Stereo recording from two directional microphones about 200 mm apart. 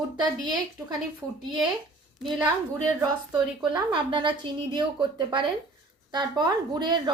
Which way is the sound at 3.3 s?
20° right (ahead or behind).